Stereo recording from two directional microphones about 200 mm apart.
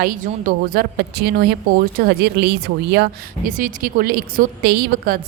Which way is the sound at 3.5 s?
40° right (ahead or behind).